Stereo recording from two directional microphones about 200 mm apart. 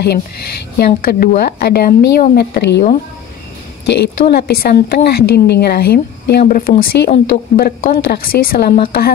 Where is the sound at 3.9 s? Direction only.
55° left (ahead or behind).